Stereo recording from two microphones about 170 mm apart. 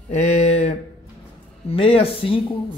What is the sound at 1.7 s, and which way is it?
Speech, 35° left (ahead or behind).